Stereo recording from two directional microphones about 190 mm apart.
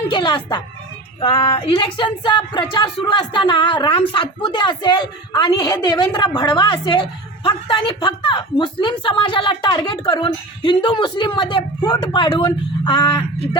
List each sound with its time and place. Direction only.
0.1 s speech: 25° left (ahead or behind)